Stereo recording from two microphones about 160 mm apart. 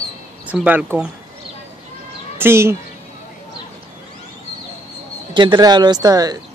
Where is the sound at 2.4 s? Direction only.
15° right (ahead or behind).